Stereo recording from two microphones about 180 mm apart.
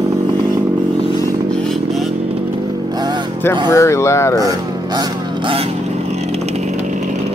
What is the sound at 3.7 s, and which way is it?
Speech, 15° left (ahead or behind).